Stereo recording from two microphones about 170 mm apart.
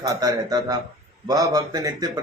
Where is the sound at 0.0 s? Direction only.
20° right (ahead or behind).